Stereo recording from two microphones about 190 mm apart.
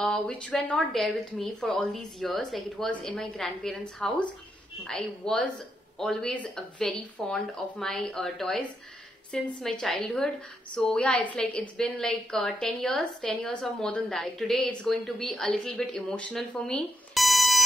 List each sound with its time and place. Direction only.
0.0 s a woman's voice: 5° left (ahead or behind)